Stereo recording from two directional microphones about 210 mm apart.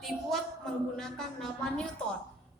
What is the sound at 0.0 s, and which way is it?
A woman's voice, centre (ahead or behind).